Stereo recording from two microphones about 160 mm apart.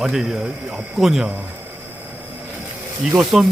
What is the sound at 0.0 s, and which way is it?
Speech, 5° right (ahead or behind).